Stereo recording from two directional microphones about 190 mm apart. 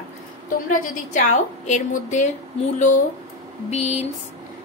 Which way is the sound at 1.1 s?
40° left (ahead or behind).